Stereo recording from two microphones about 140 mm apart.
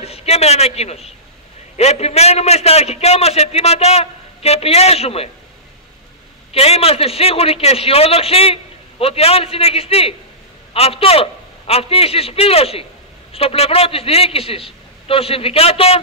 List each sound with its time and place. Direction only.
0.0 s a man's voice: 50° left (ahead or behind)
6.5 s a man's voice: 45° left (ahead or behind)